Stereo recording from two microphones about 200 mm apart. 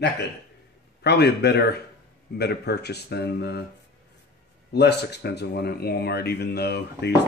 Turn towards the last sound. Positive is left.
turn(degrees=55)  # may be behind; listen again after turning